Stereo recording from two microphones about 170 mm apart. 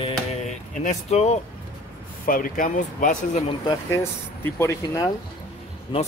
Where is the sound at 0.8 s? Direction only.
40° left (ahead or behind).